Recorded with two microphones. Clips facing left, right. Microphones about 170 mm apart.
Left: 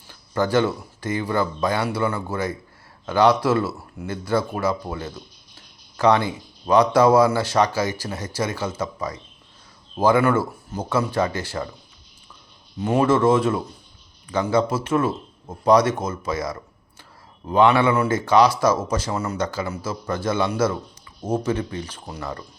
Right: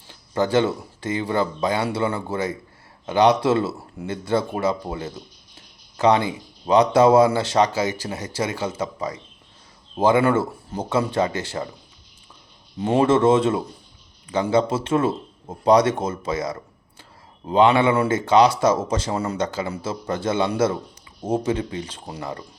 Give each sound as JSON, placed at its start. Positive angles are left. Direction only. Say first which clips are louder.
{"t": 0.1, "sound": "a man's voice", "louder": "right 1 dB", "side_deg": -20}
{"t": 12.8, "sound": "a man's voice", "louder": "right 1 dB", "side_deg": -25}